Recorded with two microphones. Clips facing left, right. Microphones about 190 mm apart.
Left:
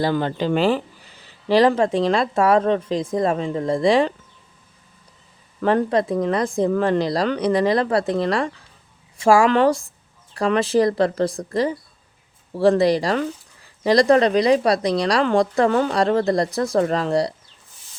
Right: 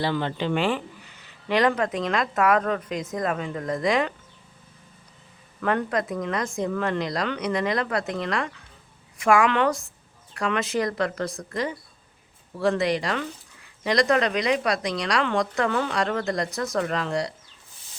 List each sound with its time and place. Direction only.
0.0 s speech: 40° left (ahead or behind)
5.5 s speech: 30° left (ahead or behind)